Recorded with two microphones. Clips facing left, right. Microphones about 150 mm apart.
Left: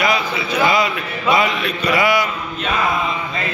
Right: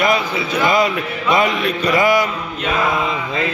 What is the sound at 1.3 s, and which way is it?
Mantra, 45° right (ahead or behind).